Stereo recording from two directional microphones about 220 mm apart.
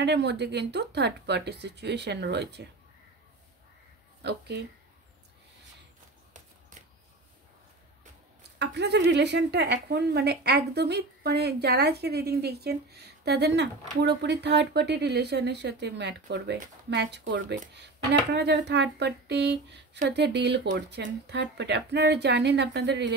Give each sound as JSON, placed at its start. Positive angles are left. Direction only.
{"t": 0.0, "sound": "speech", "side_deg": -50}
{"t": 4.2, "sound": "speech", "side_deg": -50}
{"t": 8.5, "sound": "speech", "side_deg": -50}